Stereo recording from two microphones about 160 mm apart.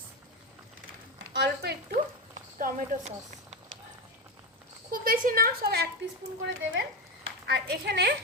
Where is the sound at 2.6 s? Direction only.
50° right (ahead or behind).